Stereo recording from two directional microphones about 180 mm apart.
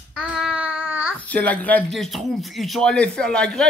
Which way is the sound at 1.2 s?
10° left (ahead or behind).